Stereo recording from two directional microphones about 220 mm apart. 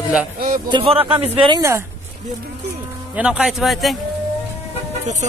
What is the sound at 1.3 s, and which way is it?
Speech, 25° right (ahead or behind).